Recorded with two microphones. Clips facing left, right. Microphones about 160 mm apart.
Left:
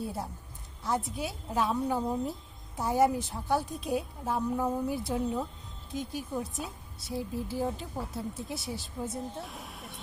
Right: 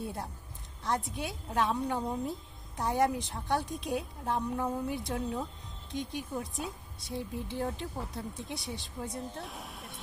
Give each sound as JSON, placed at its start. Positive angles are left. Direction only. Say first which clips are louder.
{"t": 0.0, "sound": "a woman's voice", "louder": "left 2 dB", "side_deg": 5}